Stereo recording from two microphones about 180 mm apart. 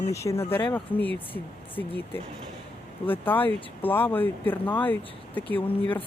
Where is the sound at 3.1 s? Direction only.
10° left (ahead or behind).